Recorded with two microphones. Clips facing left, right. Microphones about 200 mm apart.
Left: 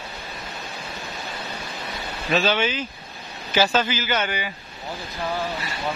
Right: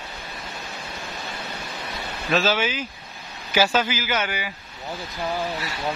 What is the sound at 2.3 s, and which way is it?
A man's voice, centre (ahead or behind).